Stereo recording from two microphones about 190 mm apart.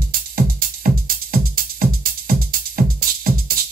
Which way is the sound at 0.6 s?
50° right (ahead or behind).